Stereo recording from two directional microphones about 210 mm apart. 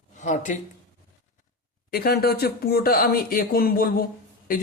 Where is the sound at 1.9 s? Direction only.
45° left (ahead or behind).